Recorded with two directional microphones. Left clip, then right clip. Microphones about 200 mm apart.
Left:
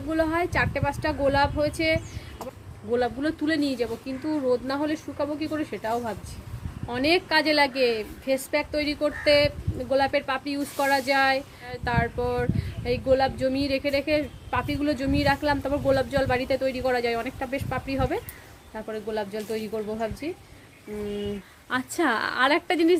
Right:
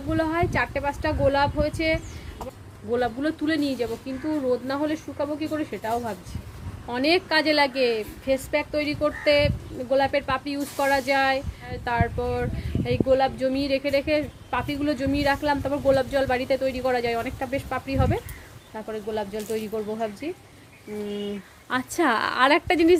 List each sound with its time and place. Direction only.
0.1 s speech: 10° left (ahead or behind)
21.7 s a woman's voice: 10° right (ahead or behind)